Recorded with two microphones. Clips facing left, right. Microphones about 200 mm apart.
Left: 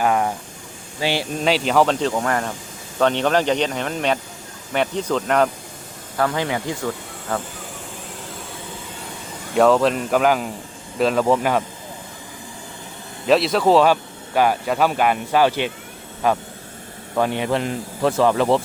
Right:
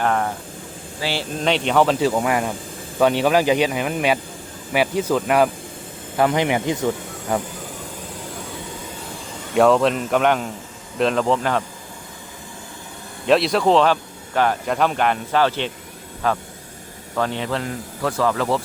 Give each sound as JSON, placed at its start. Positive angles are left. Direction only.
{"t": 0.0, "sound": "speech", "side_deg": 10}
{"t": 1.4, "sound": "speech", "side_deg": 5}
{"t": 6.1, "sound": "speech", "side_deg": -20}
{"t": 9.6, "sound": "speech", "side_deg": 0}
{"t": 13.2, "sound": "a man's voice", "side_deg": 0}